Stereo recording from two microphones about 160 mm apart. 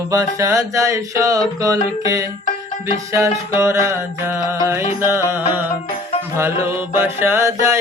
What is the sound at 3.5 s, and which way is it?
Mantra, 15° right (ahead or behind).